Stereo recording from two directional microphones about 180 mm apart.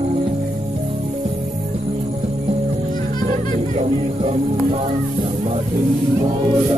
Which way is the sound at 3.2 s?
45° right (ahead or behind).